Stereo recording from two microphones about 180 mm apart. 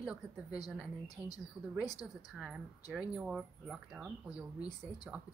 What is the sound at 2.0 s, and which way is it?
Speech, 5° right (ahead or behind).